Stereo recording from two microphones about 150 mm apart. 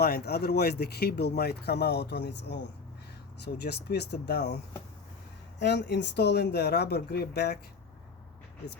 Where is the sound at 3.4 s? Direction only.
90° left.